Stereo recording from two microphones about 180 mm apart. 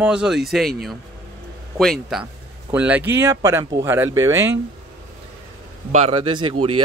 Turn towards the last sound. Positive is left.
turn(degrees=-30)  # may be behind; listen again after turning